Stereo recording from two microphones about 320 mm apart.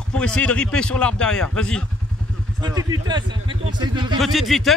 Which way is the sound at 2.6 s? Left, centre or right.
Centre.